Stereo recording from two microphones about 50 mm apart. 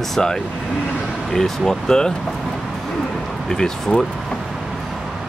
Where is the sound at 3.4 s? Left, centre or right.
Centre.